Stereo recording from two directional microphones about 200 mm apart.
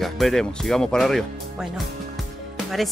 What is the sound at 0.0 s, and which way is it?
Speech, centre (ahead or behind).